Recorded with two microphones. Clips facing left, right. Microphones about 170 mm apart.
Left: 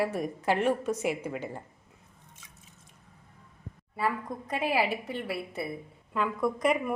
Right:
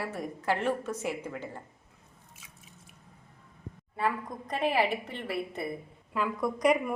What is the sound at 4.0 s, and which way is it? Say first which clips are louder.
A woman's voice: even; 5° left (ahead or behind).